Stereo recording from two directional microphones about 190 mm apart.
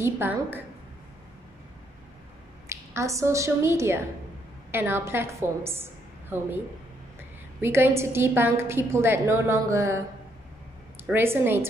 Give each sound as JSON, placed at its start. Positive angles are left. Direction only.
{"t": 0.0, "sound": "a woman's voice", "side_deg": -10}
{"t": 2.7, "sound": "a woman's voice", "side_deg": -15}
{"t": 7.6, "sound": "a woman's voice", "side_deg": -10}